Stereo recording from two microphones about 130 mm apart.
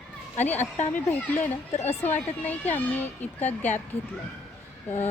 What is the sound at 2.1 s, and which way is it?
Speech, 15° left (ahead or behind).